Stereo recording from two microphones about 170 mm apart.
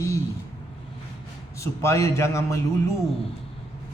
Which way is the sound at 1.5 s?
15° left (ahead or behind).